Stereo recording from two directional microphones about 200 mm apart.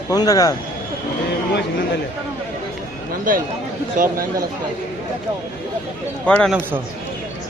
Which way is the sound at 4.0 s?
40° right (ahead or behind).